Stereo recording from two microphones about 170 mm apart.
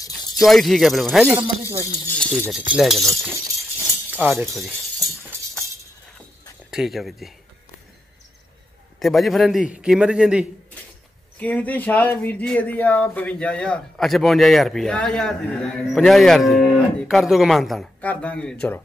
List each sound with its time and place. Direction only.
0.4 s speech: centre (ahead or behind)
4.1 s speech: 10° right (ahead or behind)
6.7 s speech: centre (ahead or behind)
9.0 s speech: centre (ahead or behind)
11.3 s speech: 10° left (ahead or behind)